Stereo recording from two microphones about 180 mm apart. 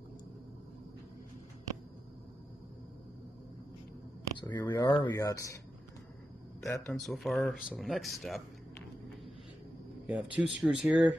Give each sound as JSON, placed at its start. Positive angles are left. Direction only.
{"t": 4.4, "sound": "speech", "side_deg": 25}
{"t": 6.7, "sound": "speech", "side_deg": 5}
{"t": 10.0, "sound": "speech", "side_deg": -10}